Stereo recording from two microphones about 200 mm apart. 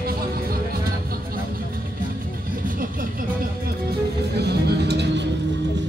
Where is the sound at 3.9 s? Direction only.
55° right (ahead or behind).